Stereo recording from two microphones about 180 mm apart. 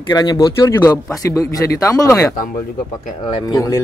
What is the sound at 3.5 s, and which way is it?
Speech, 15° left (ahead or behind).